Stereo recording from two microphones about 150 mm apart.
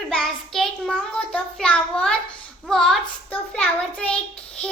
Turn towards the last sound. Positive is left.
turn(degrees=10)  # may be behind; listen again after turning